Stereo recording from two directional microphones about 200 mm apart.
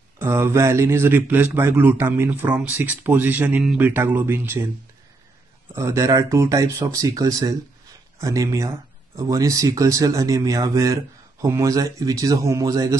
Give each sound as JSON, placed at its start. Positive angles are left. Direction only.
{"t": 0.2, "sound": "speech", "side_deg": -15}
{"t": 5.8, "sound": "speech", "side_deg": -15}